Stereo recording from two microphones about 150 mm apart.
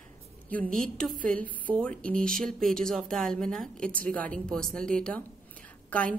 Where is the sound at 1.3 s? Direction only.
65° right (ahead or behind).